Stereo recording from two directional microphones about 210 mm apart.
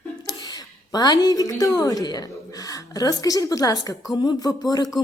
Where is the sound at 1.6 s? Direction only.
15° left (ahead or behind).